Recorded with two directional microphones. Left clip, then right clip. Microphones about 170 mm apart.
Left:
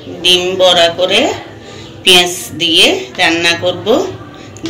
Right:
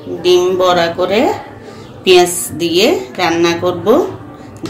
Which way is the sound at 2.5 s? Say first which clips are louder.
Left 3 dB; 50° right (ahead or behind).